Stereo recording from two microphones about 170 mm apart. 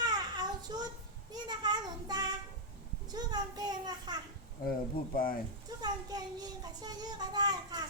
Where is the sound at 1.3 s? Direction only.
25° right (ahead or behind).